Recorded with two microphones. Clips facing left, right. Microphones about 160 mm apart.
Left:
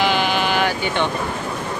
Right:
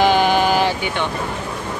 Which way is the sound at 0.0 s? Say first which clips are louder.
Right 4 dB; 45° right (ahead or behind).